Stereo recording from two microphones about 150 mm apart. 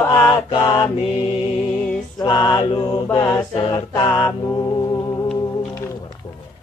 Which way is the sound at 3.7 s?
25° left (ahead or behind).